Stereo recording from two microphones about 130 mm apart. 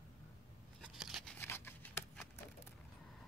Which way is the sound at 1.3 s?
15° left (ahead or behind).